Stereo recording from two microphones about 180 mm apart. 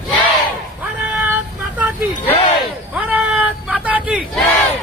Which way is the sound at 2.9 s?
10° right (ahead or behind).